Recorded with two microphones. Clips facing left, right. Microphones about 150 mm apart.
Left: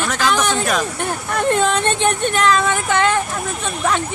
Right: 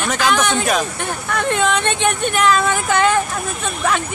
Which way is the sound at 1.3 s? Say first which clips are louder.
Left 1 dB; 40° left (ahead or behind).